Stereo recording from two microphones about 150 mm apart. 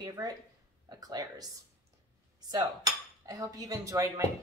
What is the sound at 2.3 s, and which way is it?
Cutlery, 25° right (ahead or behind).